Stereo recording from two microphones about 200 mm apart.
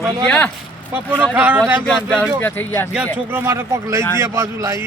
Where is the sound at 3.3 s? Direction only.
10° right (ahead or behind).